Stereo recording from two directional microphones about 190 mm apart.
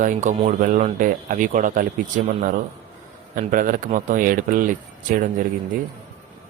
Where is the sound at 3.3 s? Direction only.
45° right (ahead or behind).